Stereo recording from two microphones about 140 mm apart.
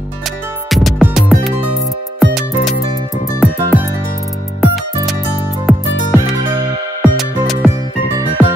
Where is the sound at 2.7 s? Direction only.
25° left (ahead or behind).